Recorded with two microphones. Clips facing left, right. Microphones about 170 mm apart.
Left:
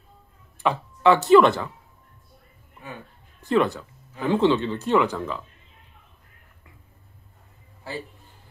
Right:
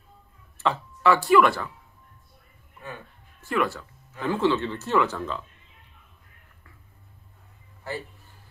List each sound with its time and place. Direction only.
0.6 s speech: 15° left (ahead or behind)
3.3 s speech: 20° left (ahead or behind)